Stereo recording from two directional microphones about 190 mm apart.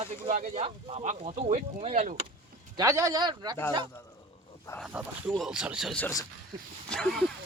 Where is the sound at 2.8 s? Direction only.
15° right (ahead or behind).